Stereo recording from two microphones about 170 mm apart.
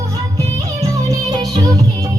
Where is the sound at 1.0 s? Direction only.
20° right (ahead or behind).